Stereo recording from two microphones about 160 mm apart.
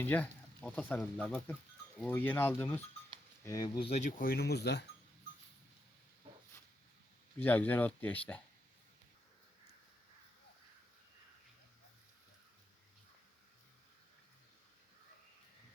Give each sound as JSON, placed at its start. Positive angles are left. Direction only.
{"t": 0.0, "sound": "speech", "side_deg": 10}
{"t": 3.8, "sound": "speech", "side_deg": 40}
{"t": 4.2, "sound": "speech", "side_deg": 75}
{"t": 7.3, "sound": "speech", "side_deg": 10}